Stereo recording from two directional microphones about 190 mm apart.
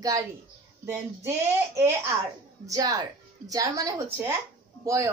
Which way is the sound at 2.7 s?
20° right (ahead or behind).